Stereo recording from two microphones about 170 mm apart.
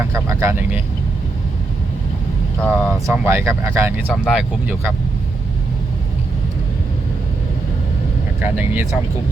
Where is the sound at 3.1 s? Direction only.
15° right (ahead or behind).